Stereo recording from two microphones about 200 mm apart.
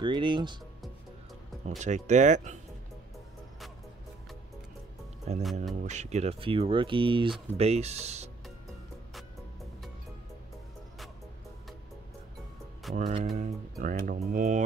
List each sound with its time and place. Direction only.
0.0 s speech: 25° right (ahead or behind)
1.8 s speech: 35° right (ahead or behind)
5.3 s speech: 35° right (ahead or behind)
12.9 s speech: 35° right (ahead or behind)